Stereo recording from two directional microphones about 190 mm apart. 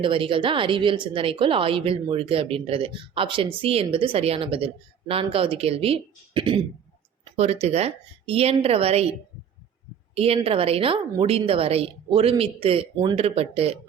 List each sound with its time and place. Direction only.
0.0 s a woman's voice: 25° right (ahead or behind)
10.2 s a woman's voice: 30° right (ahead or behind)